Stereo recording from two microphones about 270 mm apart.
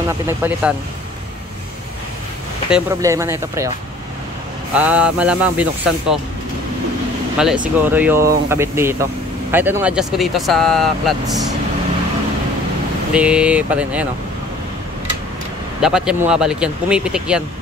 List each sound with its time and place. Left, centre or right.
0.3 s speech: centre
2.7 s speech: centre
4.7 s speech: centre
7.3 s speech: centre
13.1 s speech: centre
15.8 s speech: centre